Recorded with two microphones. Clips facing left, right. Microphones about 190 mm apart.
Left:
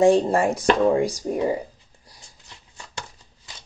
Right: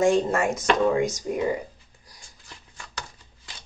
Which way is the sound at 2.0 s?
25° left (ahead or behind).